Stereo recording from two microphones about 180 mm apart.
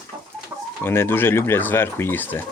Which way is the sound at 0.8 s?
15° left (ahead or behind).